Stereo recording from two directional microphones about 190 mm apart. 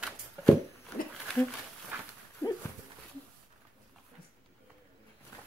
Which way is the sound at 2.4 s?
10° left (ahead or behind).